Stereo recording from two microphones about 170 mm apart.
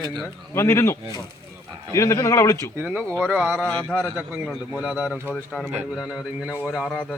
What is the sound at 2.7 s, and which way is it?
Speech, 10° right (ahead or behind).